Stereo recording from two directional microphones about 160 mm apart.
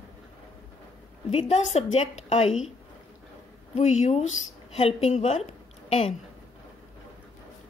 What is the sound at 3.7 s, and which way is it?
Speech, 45° left (ahead or behind).